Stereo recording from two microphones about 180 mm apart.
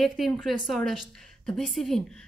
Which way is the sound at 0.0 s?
Centre (ahead or behind).